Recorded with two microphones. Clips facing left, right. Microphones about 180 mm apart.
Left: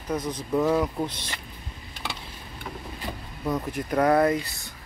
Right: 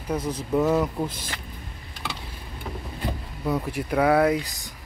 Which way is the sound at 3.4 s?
5° right (ahead or behind).